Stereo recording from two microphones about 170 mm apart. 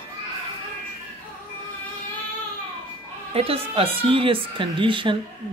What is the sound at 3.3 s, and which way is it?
Speech, 35° right (ahead or behind).